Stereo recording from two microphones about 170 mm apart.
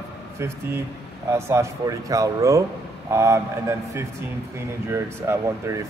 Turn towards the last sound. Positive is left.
turn(degrees=-15)  # may be behind; listen again after turning